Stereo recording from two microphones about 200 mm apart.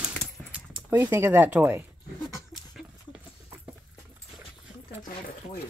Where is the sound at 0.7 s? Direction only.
15° right (ahead or behind).